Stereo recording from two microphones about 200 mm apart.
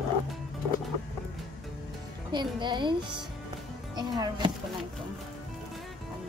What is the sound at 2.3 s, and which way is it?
Speech, 20° right (ahead or behind).